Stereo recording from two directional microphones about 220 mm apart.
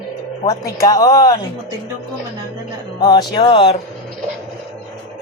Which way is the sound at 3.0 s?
20° left (ahead or behind).